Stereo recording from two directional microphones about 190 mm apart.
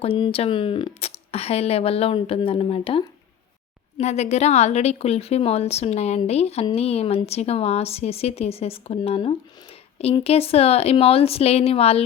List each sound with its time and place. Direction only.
0.0 s a woman's voice: 30° left (ahead or behind)